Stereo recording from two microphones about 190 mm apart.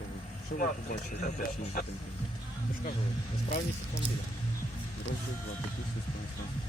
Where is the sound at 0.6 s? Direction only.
45° left (ahead or behind).